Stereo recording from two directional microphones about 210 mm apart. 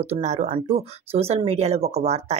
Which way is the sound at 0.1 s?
30° right (ahead or behind).